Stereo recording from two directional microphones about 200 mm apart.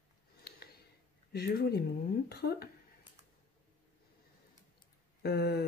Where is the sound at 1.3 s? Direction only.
50° left (ahead or behind).